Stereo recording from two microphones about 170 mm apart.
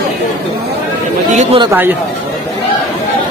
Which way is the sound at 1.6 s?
15° right (ahead or behind).